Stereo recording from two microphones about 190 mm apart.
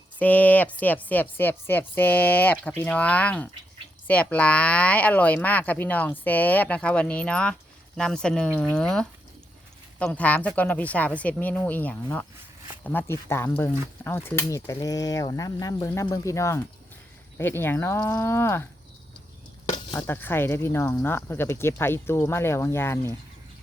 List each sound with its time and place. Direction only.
0.2 s speech: 10° left (ahead or behind)
19.6 s a sound: 20° left (ahead or behind)
20.0 s speech: 10° left (ahead or behind)